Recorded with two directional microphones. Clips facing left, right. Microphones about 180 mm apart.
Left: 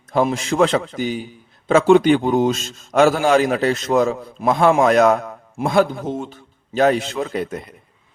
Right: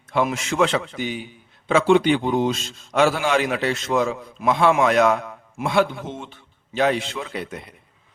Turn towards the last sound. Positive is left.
turn(degrees=45)  # may be behind; listen again after turning